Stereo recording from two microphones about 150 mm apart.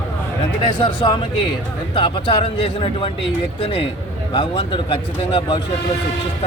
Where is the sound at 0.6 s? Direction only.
35° left (ahead or behind).